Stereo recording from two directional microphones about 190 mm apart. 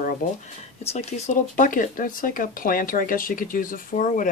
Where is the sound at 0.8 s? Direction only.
35° left (ahead or behind).